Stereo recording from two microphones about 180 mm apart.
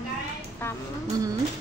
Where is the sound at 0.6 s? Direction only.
10° left (ahead or behind).